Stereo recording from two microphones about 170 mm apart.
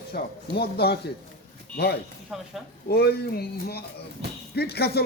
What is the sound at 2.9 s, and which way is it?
Speech, 70° left (ahead or behind).